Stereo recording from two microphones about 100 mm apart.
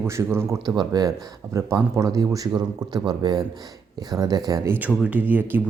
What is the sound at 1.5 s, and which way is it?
Speech, 30° right (ahead or behind).